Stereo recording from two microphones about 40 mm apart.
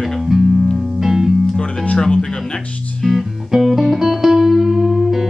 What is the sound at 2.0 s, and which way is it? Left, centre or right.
Music, centre.